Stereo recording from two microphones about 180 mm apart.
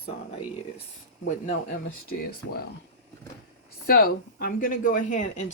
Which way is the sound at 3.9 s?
55° left (ahead or behind).